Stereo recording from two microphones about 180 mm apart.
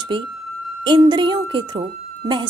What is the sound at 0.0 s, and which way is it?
A woman's voice, 25° right (ahead or behind).